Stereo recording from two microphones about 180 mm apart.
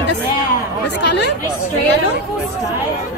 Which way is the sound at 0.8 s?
70° left (ahead or behind).